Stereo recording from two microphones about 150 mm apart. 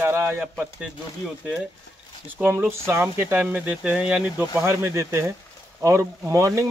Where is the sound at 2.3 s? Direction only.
10° right (ahead or behind).